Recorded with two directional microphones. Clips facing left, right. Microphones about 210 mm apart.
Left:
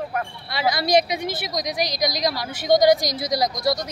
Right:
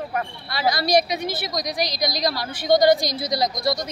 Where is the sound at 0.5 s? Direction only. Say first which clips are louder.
Even; 20° left (ahead or behind).